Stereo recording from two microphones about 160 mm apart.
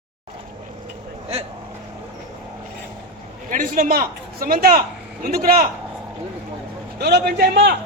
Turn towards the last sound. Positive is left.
turn(degrees=-80)